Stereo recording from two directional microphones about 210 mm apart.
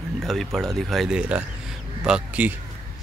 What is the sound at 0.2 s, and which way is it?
Speech, centre (ahead or behind).